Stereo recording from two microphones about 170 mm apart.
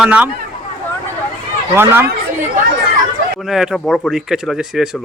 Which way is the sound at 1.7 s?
15° right (ahead or behind).